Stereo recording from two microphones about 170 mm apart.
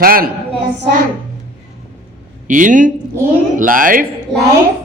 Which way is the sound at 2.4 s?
50° right (ahead or behind).